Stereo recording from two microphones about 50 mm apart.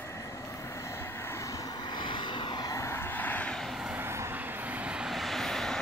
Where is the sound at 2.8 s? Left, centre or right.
Left.